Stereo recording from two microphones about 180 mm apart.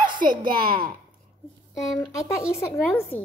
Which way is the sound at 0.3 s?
50° right (ahead or behind).